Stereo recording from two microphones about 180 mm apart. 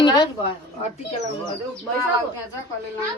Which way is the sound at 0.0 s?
25° left (ahead or behind).